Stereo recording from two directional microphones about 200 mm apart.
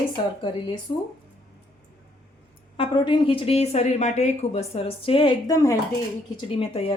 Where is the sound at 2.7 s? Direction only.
25° left (ahead or behind).